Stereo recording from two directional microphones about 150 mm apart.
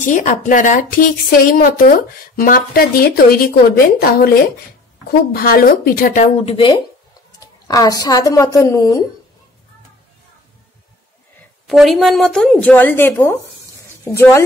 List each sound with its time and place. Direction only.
0.0 s a woman's voice: 55° left (ahead or behind)
6.4 s speech: 35° left (ahead or behind)
7.3 s a woman's voice: 25° left (ahead or behind)
11.6 s a woman's voice: centre (ahead or behind); by 14.4 s 15° left (ahead or behind)